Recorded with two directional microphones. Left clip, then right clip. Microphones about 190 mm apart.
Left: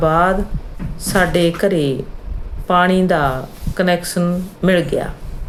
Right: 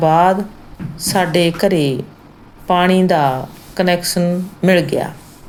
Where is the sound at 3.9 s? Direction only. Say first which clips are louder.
Right 2 dB; 45° left (ahead or behind).